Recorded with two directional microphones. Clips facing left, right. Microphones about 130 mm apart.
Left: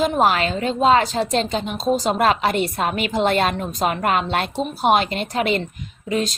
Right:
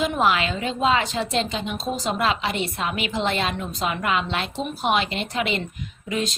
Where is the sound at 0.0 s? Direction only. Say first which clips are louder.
Left 3 dB; 40° left (ahead or behind).